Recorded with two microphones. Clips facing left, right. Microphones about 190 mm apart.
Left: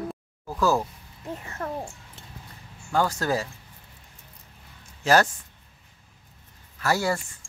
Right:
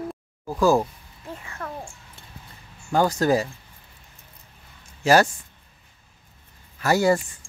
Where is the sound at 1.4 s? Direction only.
40° left (ahead or behind).